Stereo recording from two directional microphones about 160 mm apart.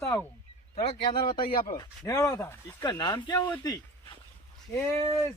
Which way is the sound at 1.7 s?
20° left (ahead or behind).